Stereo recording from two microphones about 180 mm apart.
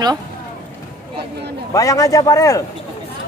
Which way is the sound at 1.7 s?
20° left (ahead or behind).